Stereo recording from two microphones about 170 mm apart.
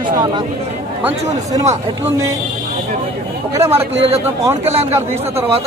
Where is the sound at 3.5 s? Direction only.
15° right (ahead or behind).